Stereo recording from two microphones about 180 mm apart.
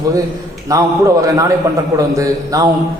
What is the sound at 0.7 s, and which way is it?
A man's voice, 20° right (ahead or behind).